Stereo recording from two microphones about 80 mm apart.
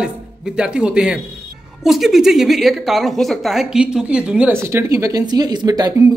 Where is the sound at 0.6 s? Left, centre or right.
Centre.